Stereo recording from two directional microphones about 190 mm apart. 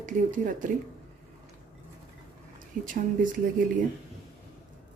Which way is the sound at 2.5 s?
45° right (ahead or behind).